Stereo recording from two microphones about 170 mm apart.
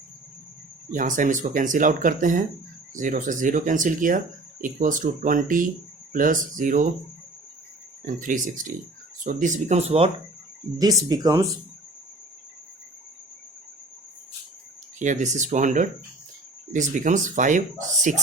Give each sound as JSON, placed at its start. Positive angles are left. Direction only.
{"t": 0.9, "sound": "speech", "side_deg": -50}
{"t": 8.0, "sound": "speech", "side_deg": -50}
{"t": 10.8, "sound": "speech", "side_deg": -20}
{"t": 14.9, "sound": "speech", "side_deg": -45}